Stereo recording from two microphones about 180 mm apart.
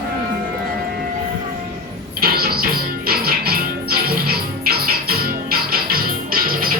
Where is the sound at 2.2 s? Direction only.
55° right (ahead or behind).